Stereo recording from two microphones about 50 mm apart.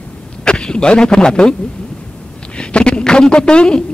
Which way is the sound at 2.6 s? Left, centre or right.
Centre.